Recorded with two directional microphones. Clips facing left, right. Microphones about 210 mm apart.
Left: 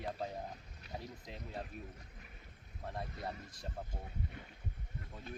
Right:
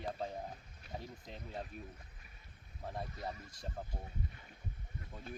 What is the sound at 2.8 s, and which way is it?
Speech, centre (ahead or behind).